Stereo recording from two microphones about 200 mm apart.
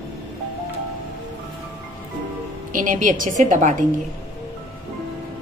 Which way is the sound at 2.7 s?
40° right (ahead or behind).